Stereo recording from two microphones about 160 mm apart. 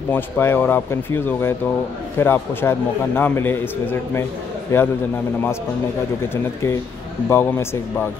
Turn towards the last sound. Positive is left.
turn(degrees=15)  # may be behind; listen again after turning